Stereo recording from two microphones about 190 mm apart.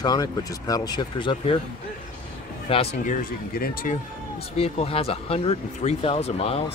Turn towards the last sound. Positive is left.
turn(degrees=30)  # may be behind; listen again after turning